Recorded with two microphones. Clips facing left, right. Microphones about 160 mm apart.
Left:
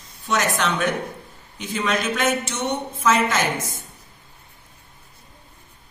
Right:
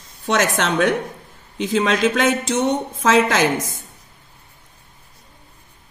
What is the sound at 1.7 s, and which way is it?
Speech, 90° right.